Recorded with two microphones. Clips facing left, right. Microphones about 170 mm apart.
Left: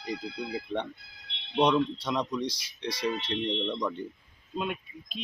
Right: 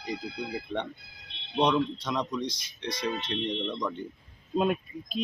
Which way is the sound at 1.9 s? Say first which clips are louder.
Left 1 dB; 5° left (ahead or behind).